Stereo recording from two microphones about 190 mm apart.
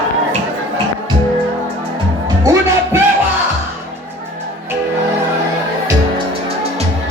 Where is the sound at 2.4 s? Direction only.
15° right (ahead or behind).